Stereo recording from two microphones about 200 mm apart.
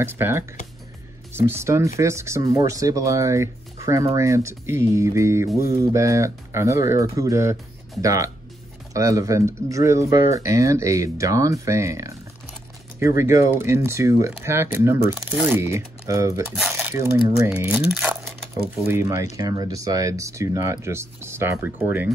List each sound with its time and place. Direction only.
0.0 s speech: 10° right (ahead or behind)
16.5 s a sound: centre (ahead or behind)
17.4 s speech: 15° right (ahead or behind)